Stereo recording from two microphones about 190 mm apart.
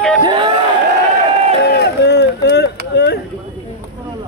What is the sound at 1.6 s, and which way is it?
Speech, 60° left (ahead or behind).